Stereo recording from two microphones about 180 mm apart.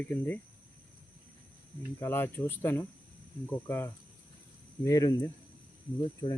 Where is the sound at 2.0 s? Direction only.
10° left (ahead or behind).